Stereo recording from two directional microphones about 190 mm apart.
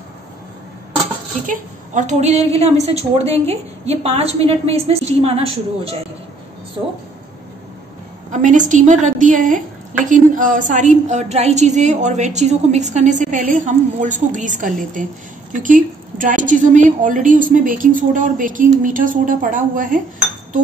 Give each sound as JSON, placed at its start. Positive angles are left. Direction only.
{"t": 1.4, "sound": "a woman's voice", "side_deg": -40}
{"t": 8.3, "sound": "a woman's voice", "side_deg": -40}